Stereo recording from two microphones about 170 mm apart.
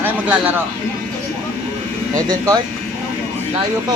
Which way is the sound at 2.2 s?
20° right (ahead or behind).